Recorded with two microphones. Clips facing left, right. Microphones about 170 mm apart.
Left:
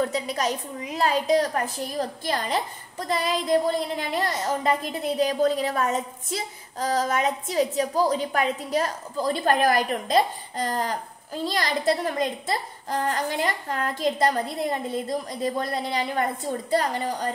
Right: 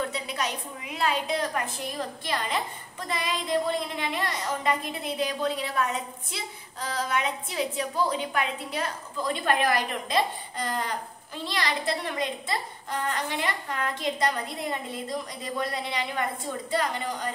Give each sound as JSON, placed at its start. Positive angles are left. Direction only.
{"t": 0.0, "sound": "speech", "side_deg": 40}